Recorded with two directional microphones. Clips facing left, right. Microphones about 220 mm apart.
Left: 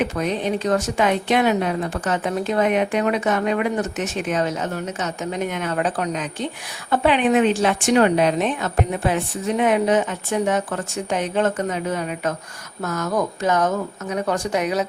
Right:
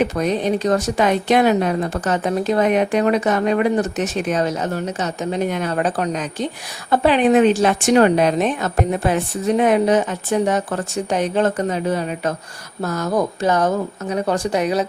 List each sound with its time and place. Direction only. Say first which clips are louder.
0.0 s speech: right 3 dB; 40° right (ahead or behind)